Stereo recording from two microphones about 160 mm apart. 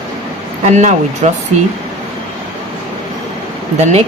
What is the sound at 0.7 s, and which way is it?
Speech, 45° right (ahead or behind).